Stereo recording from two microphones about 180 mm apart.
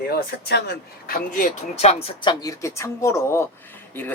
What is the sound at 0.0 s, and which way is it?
Speech, 65° left (ahead or behind).